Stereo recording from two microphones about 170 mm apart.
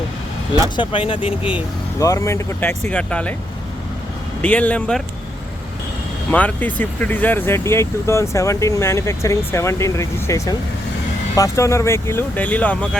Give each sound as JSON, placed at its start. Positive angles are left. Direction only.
{"t": 0.8, "sound": "speech", "side_deg": 30}
{"t": 2.0, "sound": "speech", "side_deg": 20}
{"t": 4.4, "sound": "speech", "side_deg": 10}
{"t": 6.3, "sound": "speech", "side_deg": 10}